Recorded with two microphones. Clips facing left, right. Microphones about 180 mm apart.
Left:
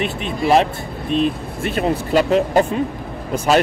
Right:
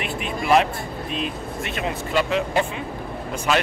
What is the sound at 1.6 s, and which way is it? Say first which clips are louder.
Speech: left 9 dB; 40° left (ahead or behind).